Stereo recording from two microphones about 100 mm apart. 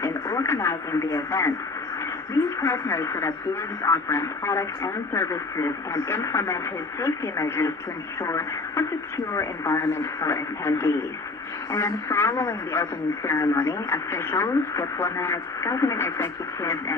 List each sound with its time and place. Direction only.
0.0 s radio: 30° left (ahead or behind)
2.6 s speech: 30° left (ahead or behind)